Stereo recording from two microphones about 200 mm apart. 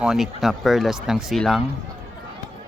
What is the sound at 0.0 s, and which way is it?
A man's voice, centre (ahead or behind).